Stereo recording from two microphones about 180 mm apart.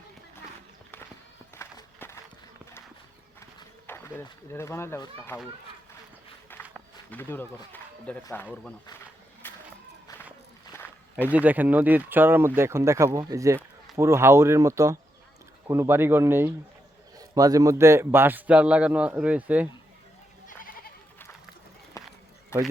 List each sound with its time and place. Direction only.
1.5 s music: 15° left (ahead or behind)
3.8 s speech: 15° left (ahead or behind)
6.5 s run: 10° left (ahead or behind)
7.1 s a man's voice: 10° left (ahead or behind)
9.4 s a sound: 10° left (ahead or behind)
10.7 s walk: 10° left (ahead or behind)
11.3 s a man's voice: 10° right (ahead or behind)
22.0 s run: 20° left (ahead or behind)
22.5 s speech: 15° left (ahead or behind)